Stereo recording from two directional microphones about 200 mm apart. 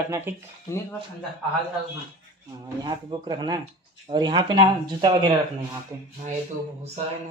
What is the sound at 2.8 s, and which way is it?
Speech, 20° right (ahead or behind).